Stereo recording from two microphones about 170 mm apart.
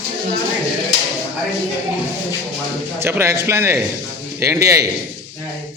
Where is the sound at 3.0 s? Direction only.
15° right (ahead or behind).